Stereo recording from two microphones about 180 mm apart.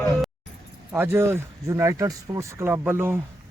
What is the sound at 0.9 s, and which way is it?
Speech, 15° right (ahead or behind).